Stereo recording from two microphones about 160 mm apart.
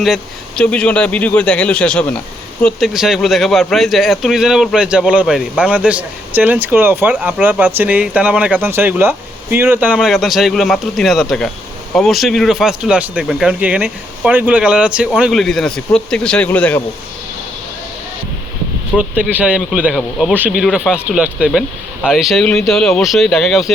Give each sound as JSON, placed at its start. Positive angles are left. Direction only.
{"t": 0.0, "sound": "speech", "side_deg": 0}
{"t": 18.9, "sound": "speech", "side_deg": 0}